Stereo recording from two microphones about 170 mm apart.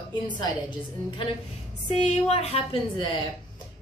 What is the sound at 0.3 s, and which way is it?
A woman's voice, 30° left (ahead or behind).